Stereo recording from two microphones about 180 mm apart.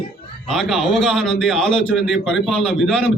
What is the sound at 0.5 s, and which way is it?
A man's voice, centre (ahead or behind).